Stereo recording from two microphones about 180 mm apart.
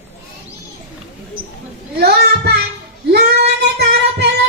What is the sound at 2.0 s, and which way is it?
Child singing, 60° right (ahead or behind).